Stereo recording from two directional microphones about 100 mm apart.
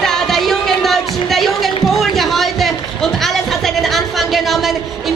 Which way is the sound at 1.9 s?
Centre (ahead or behind).